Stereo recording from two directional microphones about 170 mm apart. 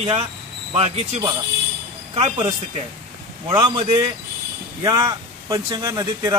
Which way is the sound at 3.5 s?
25° right (ahead or behind).